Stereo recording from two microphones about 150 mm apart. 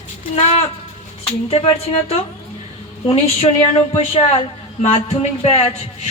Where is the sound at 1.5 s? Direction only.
40° left (ahead or behind).